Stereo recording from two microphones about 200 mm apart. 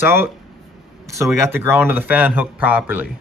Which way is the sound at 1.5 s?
10° right (ahead or behind).